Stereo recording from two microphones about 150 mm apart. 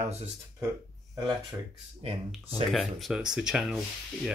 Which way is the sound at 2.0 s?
35° right (ahead or behind).